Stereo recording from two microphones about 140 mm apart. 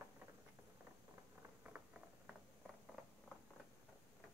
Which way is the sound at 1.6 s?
10° right (ahead or behind).